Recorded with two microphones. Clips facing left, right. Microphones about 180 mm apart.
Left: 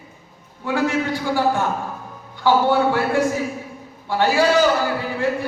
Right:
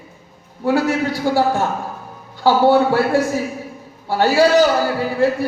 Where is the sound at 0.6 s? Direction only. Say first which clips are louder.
Right 4 dB; 35° right (ahead or behind).